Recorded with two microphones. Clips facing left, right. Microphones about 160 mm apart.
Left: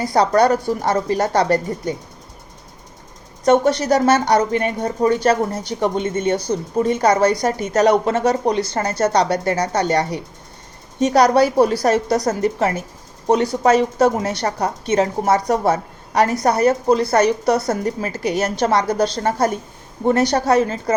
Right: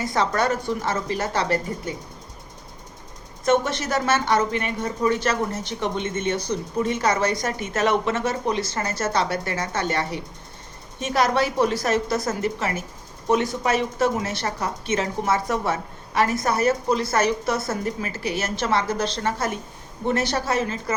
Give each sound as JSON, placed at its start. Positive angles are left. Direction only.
{"t": 0.0, "sound": "a woman's voice", "side_deg": 35}
{"t": 3.7, "sound": "a woman's voice", "side_deg": 35}